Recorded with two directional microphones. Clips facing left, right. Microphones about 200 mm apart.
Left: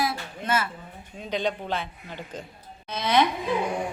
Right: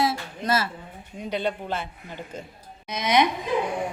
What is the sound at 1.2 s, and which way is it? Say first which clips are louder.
A woman's voice: even; 10° right (ahead or behind).